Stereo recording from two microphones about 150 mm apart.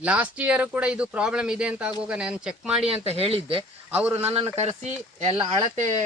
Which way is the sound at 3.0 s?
40° right (ahead or behind).